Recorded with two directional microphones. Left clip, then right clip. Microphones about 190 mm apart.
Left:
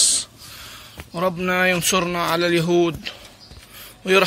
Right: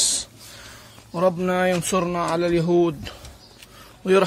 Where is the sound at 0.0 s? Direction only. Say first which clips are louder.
Left 3 dB; 25° right (ahead or behind).